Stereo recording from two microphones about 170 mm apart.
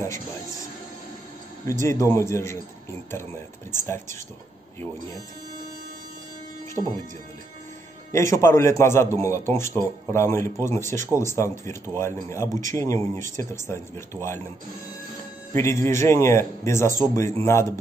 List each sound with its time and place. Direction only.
0.0 s music: 15° left (ahead or behind)
1.7 s a man's voice: 15° left (ahead or behind)
8.1 s a man's voice: 15° left (ahead or behind)
15.5 s a man's voice: 15° left (ahead or behind)